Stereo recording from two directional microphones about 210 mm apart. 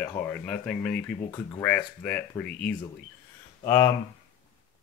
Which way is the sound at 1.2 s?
20° left (ahead or behind).